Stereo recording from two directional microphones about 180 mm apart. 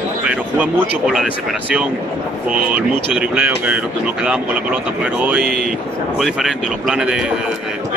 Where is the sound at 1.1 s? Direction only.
5° right (ahead or behind).